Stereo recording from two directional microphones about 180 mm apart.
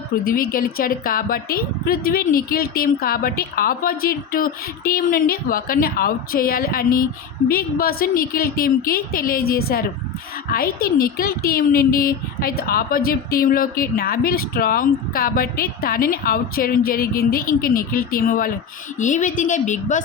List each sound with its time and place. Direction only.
0.3 s a woman's voice: 55° left (ahead or behind)